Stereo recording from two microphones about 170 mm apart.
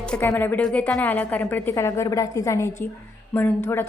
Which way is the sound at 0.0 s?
10° left (ahead or behind).